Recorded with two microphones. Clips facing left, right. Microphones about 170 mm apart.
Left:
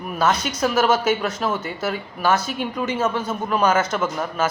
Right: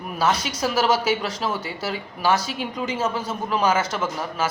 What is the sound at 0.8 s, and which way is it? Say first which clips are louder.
Speech: left 2 dB; 55° left (ahead or behind).